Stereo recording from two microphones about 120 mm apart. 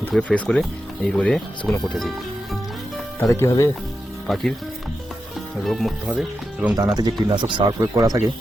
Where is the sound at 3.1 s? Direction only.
25° left (ahead or behind).